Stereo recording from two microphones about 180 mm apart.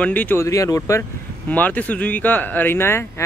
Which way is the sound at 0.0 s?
10° left (ahead or behind).